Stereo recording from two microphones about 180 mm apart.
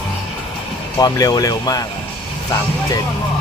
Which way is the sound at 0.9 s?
20° left (ahead or behind).